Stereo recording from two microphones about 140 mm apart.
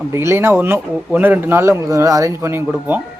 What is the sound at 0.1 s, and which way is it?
A man's voice, 20° right (ahead or behind).